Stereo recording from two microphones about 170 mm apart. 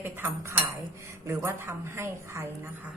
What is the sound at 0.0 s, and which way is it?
A woman's voice, 15° right (ahead or behind).